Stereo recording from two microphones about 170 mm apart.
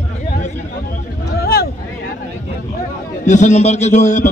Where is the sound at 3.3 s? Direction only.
45° left (ahead or behind).